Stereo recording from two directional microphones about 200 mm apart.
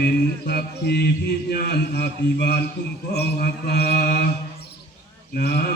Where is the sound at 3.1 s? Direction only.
55° left (ahead or behind).